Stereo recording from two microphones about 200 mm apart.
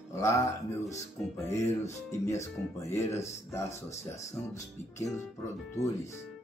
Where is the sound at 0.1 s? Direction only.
15° left (ahead or behind).